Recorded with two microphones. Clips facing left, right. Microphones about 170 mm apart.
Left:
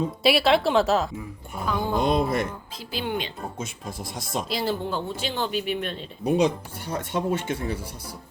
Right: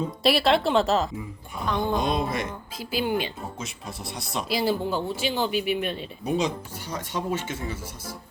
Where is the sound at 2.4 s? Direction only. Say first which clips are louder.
Left 2 dB; centre (ahead or behind).